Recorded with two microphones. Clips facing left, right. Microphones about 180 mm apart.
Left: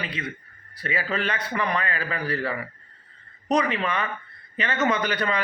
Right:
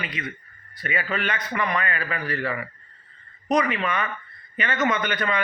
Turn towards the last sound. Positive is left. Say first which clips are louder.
# even
turn(degrees=35)  # may be behind; listen again after turning